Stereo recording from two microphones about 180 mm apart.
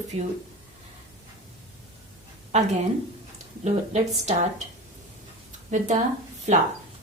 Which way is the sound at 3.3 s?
40° right (ahead or behind).